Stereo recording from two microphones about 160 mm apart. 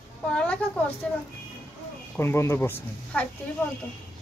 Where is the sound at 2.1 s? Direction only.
15° left (ahead or behind).